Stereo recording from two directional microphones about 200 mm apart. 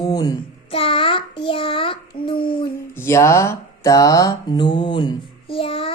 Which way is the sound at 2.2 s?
25° left (ahead or behind).